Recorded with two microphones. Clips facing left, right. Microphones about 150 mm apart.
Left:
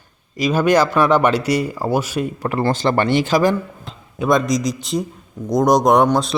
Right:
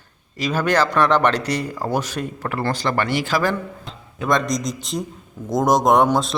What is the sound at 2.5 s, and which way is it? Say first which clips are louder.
A man's voice: left 4 dB; 20° left (ahead or behind).